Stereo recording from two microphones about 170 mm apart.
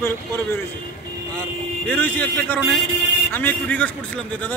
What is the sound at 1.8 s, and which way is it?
A man's voice, 10° left (ahead or behind).